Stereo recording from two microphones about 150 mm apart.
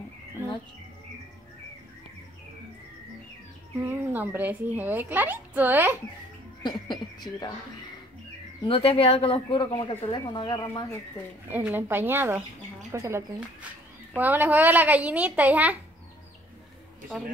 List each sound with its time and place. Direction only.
0.4 s chirp: 15° right (ahead or behind)
3.8 s a woman's voice: 15° right (ahead or behind)
6.6 s speech: 30° left (ahead or behind)
8.6 s speech: 40° left (ahead or behind); by 11.0 s 20° left (ahead or behind)
11.5 s a woman's voice: 15° right (ahead or behind)